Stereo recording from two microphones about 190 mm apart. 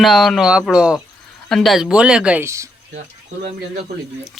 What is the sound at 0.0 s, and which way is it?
Speech, centre (ahead or behind).